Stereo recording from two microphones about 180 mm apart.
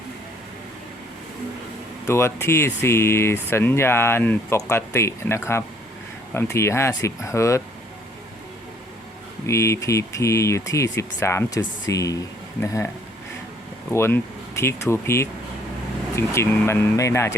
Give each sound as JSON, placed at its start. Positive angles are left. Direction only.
{"t": 2.0, "sound": "speech", "side_deg": 15}
{"t": 9.5, "sound": "speech", "side_deg": 15}
{"t": 13.9, "sound": "speech", "side_deg": 15}